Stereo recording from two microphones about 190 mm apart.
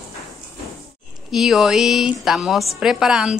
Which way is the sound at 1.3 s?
Centre (ahead or behind).